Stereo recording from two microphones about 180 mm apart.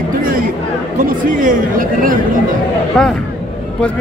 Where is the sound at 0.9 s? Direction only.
50° right (ahead or behind).